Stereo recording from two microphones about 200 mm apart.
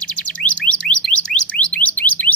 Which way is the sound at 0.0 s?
5° left (ahead or behind).